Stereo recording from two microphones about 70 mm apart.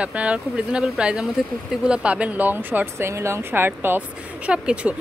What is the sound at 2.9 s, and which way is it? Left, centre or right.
A woman's voice, right.